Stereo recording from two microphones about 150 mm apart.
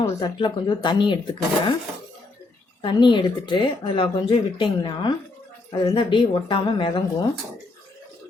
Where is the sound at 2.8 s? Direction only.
30° left (ahead or behind).